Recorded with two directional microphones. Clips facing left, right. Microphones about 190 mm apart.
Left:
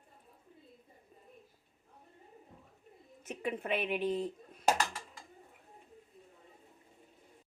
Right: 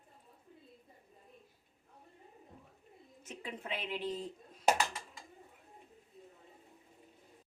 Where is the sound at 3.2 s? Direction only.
60° left (ahead or behind).